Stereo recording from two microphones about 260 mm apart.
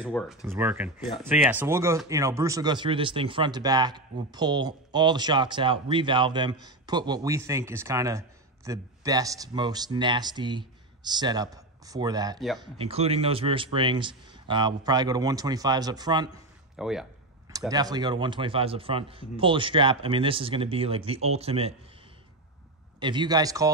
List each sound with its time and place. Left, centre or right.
0.0 s speech: centre
16.7 s speech: centre
17.5 s speech: centre
22.9 s speech: centre